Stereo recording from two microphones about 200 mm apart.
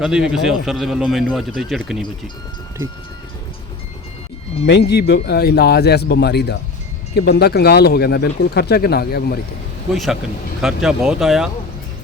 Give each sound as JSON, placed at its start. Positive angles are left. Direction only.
{"t": 0.0, "sound": "a man's voice", "side_deg": -5}
{"t": 4.6, "sound": "speech", "side_deg": 55}
{"t": 9.9, "sound": "a man's voice", "side_deg": 0}